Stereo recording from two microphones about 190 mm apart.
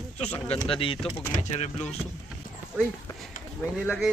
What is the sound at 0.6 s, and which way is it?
Speech, 30° left (ahead or behind).